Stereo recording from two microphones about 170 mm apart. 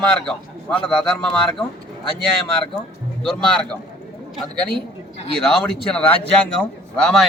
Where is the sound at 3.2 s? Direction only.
5° left (ahead or behind).